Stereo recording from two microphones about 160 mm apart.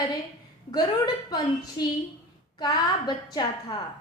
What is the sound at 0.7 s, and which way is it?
A woman's voice, 25° left (ahead or behind).